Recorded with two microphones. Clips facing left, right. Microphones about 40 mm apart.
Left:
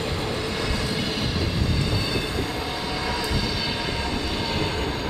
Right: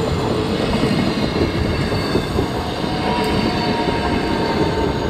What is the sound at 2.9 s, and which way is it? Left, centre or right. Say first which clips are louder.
Train: right 10 dB; right.